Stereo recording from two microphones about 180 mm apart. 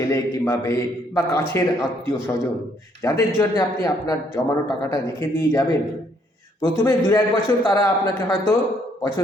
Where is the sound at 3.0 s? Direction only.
20° left (ahead or behind).